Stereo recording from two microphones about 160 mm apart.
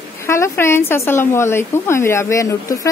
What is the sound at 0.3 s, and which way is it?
Speech, 15° left (ahead or behind).